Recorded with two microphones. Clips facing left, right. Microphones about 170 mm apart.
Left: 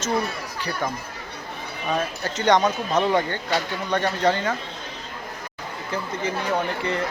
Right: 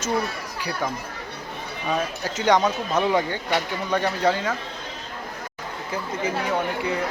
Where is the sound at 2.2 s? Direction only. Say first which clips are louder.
Left 1 dB; 10° right (ahead or behind).